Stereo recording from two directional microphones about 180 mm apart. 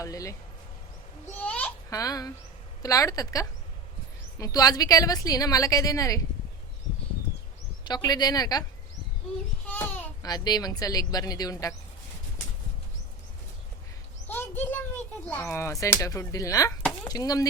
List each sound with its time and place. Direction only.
0.0 s speech: 20° left (ahead or behind)
1.4 s a child's voice: 10° left (ahead or behind)
7.9 s speech: 20° left (ahead or behind)
9.7 s speech: 15° left (ahead or behind)
14.3 s a child's voice: 10° left (ahead or behind)